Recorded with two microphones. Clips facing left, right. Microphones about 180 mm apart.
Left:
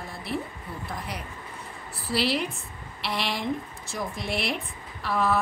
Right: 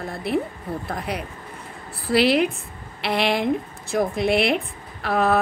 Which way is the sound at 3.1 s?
60° right (ahead or behind).